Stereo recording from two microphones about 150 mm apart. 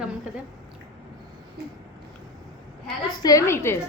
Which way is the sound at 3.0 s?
25° left (ahead or behind).